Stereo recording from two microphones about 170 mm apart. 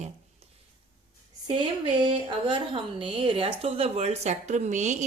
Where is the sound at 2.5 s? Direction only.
30° right (ahead or behind); by 4.9 s 45° right (ahead or behind).